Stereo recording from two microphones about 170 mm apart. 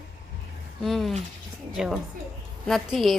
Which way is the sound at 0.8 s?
Centre (ahead or behind).